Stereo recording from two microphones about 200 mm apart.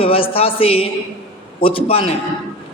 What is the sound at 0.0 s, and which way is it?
A man's voice, 25° left (ahead or behind).